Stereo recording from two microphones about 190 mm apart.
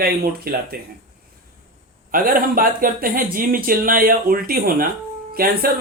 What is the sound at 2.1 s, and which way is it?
Speech, 45° right (ahead or behind).